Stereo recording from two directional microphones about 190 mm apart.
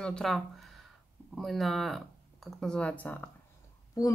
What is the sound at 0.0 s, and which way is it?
A woman's voice, 5° left (ahead or behind).